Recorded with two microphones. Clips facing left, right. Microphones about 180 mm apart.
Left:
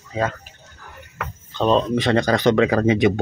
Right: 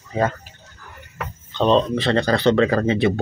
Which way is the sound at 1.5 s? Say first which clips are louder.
Right 1 dB; 5° left (ahead or behind).